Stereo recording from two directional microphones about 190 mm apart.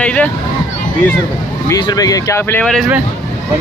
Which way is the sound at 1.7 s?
20° left (ahead or behind).